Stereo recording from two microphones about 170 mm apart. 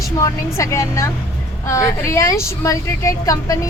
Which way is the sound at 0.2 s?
15° left (ahead or behind).